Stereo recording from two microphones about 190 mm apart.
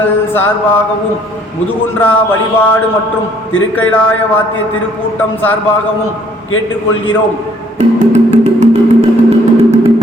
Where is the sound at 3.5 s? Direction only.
90° left.